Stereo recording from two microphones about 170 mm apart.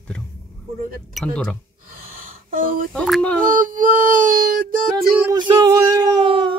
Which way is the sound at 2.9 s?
5° left (ahead or behind).